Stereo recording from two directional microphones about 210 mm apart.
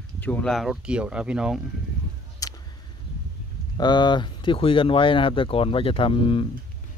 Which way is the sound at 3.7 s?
20° left (ahead or behind).